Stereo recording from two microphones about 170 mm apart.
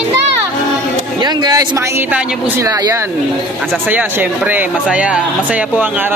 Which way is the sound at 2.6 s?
20° right (ahead or behind).